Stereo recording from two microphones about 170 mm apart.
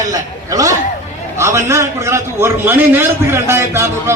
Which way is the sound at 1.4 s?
15° right (ahead or behind).